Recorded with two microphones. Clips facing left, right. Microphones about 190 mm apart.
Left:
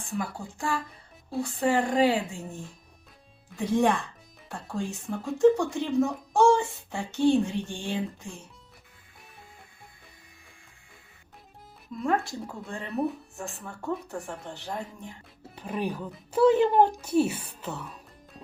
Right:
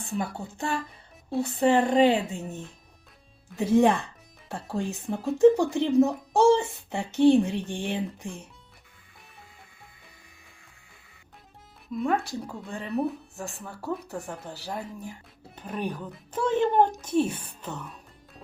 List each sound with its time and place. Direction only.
0.3 s speech: 25° right (ahead or behind)
11.9 s speech: centre (ahead or behind)
15.5 s speech: 10° left (ahead or behind)